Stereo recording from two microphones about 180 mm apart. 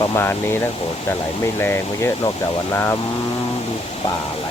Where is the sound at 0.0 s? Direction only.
20° left (ahead or behind).